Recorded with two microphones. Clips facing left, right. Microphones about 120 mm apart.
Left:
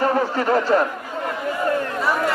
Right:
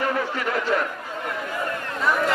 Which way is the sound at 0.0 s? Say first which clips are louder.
Left 5 dB; 35° left (ahead or behind).